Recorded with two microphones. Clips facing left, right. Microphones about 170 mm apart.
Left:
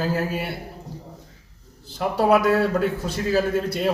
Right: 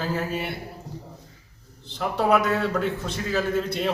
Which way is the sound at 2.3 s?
40° left (ahead or behind).